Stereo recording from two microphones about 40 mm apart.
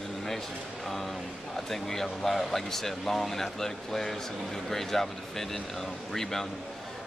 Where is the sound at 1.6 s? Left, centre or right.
Centre.